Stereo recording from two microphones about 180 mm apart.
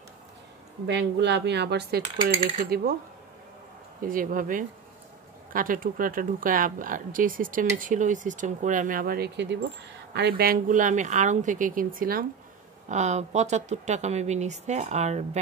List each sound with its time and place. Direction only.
0.8 s cutlery: 75° right (ahead or behind)
2.3 s coin: 30° right (ahead or behind)
2.6 s speech: 60° right (ahead or behind)
4.0 s speech: 50° right (ahead or behind)
12.8 s speech: 40° right (ahead or behind)